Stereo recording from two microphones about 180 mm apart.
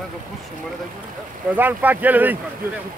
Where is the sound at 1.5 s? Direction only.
10° right (ahead or behind).